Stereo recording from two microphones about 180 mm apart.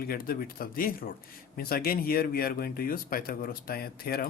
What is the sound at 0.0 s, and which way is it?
Speech, 55° left (ahead or behind).